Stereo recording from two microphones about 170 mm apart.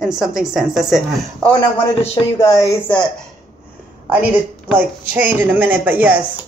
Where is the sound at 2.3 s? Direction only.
20° left (ahead or behind).